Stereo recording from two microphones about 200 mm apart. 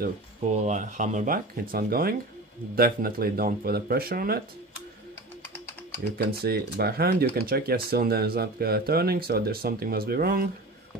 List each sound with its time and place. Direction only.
0.5 s speech: 35° right (ahead or behind)
6.1 s speech: 50° right (ahead or behind)